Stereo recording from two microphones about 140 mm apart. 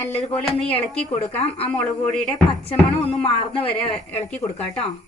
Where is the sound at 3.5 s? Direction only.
40° left (ahead or behind).